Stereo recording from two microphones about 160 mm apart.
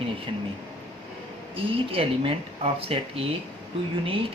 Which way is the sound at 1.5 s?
35° right (ahead or behind).